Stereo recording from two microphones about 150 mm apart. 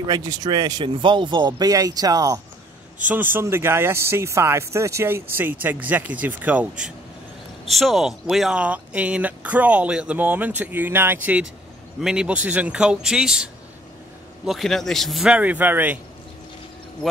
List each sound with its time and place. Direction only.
0.0 s speech: 25° right (ahead or behind)
3.1 s a man's voice: 15° right (ahead or behind)